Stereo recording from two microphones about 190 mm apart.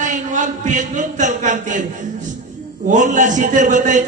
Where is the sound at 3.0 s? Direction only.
40° right (ahead or behind).